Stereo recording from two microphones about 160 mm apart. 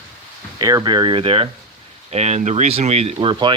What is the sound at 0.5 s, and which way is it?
Speech, 25° right (ahead or behind).